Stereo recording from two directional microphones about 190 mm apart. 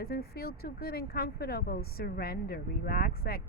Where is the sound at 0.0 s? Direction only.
55° left (ahead or behind).